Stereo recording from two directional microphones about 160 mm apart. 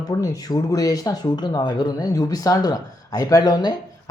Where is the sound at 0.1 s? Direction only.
15° left (ahead or behind).